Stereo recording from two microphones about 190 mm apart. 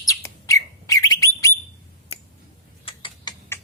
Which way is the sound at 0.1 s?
20° left (ahead or behind).